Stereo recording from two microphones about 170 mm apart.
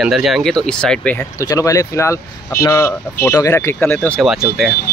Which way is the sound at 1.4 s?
20° left (ahead or behind).